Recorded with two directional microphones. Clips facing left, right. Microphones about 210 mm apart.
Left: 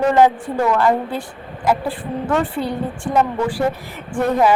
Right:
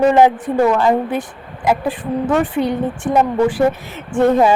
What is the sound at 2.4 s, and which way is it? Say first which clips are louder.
Speech: right 4 dB; 20° right (ahead or behind).